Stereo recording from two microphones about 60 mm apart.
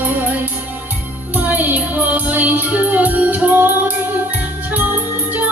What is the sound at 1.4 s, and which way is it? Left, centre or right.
Music, right.